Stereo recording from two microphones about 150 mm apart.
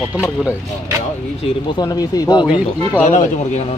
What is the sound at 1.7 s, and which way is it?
Speech, 25° left (ahead or behind).